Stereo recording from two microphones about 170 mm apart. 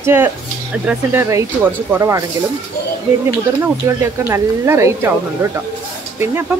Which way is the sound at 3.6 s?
15° right (ahead or behind).